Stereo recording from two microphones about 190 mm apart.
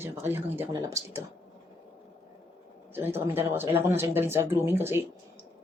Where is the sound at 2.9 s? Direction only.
10° right (ahead or behind).